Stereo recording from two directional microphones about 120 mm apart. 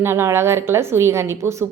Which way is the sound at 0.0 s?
20° right (ahead or behind).